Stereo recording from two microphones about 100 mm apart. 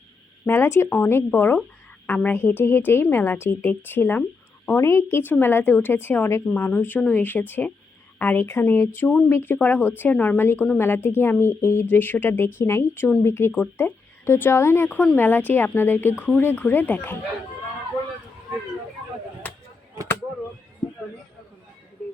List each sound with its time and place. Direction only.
0.4 s speech: 25° left (ahead or behind)